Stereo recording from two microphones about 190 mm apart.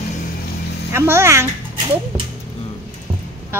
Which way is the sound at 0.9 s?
15° right (ahead or behind).